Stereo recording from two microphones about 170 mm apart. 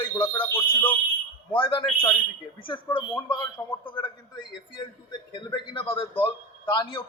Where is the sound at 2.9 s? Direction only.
30° left (ahead or behind).